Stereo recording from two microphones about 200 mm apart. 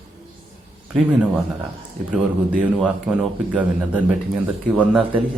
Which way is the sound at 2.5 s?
5° right (ahead or behind).